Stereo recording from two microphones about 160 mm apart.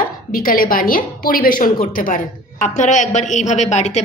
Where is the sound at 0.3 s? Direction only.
60° left (ahead or behind).